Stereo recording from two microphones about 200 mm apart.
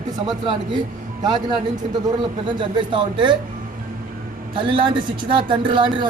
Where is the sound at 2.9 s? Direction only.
25° right (ahead or behind).